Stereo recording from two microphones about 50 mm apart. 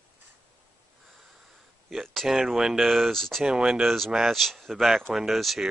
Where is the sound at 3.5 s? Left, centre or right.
Centre.